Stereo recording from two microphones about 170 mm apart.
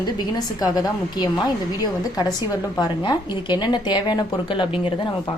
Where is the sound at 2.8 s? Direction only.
25° left (ahead or behind).